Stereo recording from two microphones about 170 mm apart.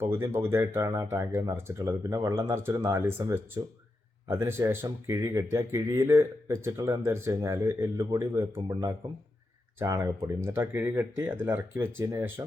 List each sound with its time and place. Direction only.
0.0 s speech: 15° right (ahead or behind)